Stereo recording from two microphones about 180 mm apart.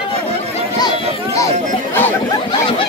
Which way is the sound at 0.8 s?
20° left (ahead or behind).